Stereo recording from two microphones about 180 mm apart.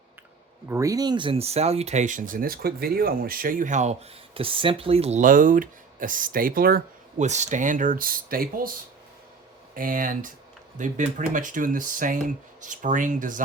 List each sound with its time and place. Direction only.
0.7 s speech: 20° right (ahead or behind); by 3.9 s 40° right (ahead or behind)
4.4 s speech: 30° right (ahead or behind); by 7.3 s 55° right (ahead or behind)
7.3 s speech: 40° right (ahead or behind)
9.7 s speech: 50° right (ahead or behind)